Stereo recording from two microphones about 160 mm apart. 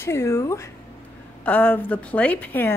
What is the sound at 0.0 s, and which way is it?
Speech, 15° left (ahead or behind).